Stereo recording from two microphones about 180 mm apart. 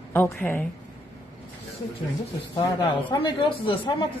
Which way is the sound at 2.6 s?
25° left (ahead or behind).